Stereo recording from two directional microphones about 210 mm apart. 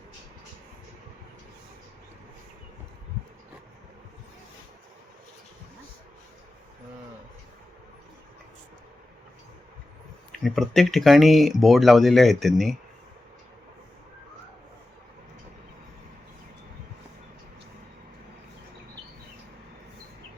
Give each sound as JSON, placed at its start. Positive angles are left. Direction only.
{"t": 10.4, "sound": "speech", "side_deg": 0}